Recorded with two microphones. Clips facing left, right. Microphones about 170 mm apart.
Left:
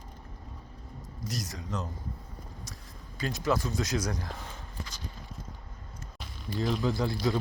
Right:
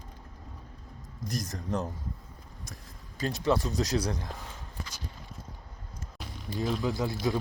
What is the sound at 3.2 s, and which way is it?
Speech, 35° right (ahead or behind).